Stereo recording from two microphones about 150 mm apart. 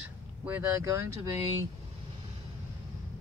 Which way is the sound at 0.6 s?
20° right (ahead or behind).